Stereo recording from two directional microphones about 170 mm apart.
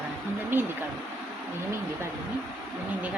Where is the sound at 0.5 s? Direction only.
10° right (ahead or behind).